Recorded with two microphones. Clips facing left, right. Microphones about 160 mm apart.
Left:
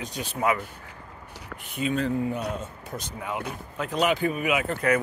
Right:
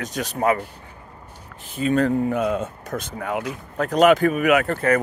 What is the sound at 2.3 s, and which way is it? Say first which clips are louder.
Speech: right 8 dB; 85° right.